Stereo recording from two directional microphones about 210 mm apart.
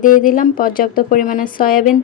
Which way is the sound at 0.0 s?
40° left (ahead or behind).